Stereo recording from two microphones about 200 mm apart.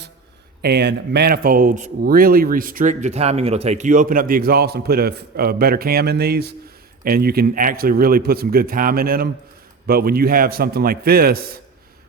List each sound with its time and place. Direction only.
0.6 s speech: 55° right (ahead or behind)